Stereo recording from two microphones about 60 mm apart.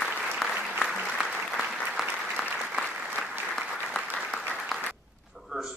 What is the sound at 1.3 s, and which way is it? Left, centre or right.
Applause, centre.